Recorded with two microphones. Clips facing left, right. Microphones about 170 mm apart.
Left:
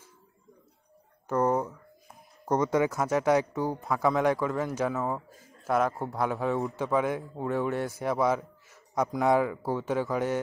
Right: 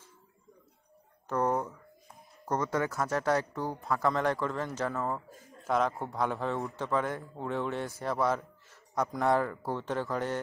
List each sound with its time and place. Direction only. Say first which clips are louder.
1.3 s speech: left 4 dB; 5° left (ahead or behind)
2.4 s a man's voice: left 5 dB; 15° left (ahead or behind)
5.3 s a sound: right 2 dB; 20° right (ahead or behind)
5.7 s a man's voice: left 2 dB; 5° left (ahead or behind)